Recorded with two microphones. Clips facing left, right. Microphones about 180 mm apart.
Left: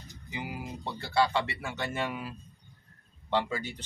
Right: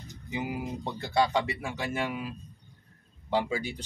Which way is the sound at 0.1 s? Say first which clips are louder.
Right 5 dB; 20° right (ahead or behind).